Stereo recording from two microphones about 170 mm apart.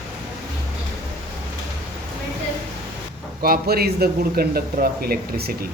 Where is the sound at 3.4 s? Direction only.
65° right (ahead or behind).